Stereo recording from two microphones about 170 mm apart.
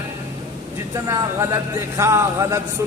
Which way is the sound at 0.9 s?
20° right (ahead or behind).